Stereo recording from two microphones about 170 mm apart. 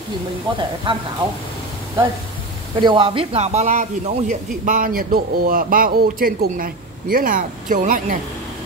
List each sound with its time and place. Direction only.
0.5 s speech: 30° right (ahead or behind)
2.8 s a man's voice: 30° right (ahead or behind)
4.6 s speech: 55° right (ahead or behind)